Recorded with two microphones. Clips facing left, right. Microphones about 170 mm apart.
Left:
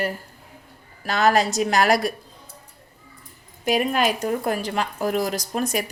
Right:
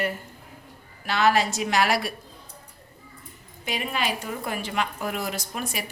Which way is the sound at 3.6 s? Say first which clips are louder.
Left 8 dB; 45° left (ahead or behind).